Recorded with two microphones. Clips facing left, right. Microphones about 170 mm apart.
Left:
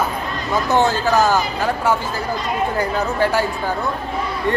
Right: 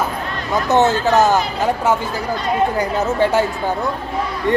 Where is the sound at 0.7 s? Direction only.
20° right (ahead or behind).